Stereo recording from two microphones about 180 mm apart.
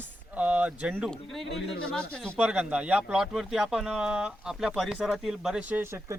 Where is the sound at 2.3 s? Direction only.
5° right (ahead or behind).